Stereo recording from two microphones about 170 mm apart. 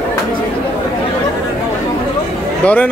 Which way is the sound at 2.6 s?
10° left (ahead or behind).